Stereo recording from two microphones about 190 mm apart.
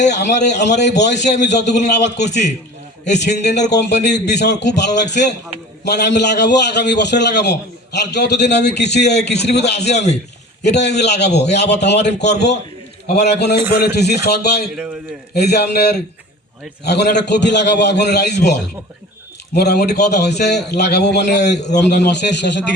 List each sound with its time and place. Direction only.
0.1 s a man's voice: 65° left (ahead or behind)
3.2 s a man's voice: 65° left (ahead or behind)